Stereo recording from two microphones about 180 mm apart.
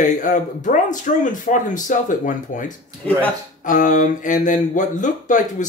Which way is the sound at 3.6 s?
45° left (ahead or behind).